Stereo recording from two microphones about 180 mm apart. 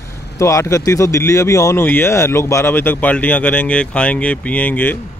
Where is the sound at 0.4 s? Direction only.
15° left (ahead or behind).